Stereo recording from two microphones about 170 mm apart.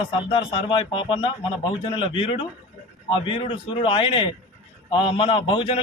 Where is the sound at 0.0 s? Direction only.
30° left (ahead or behind).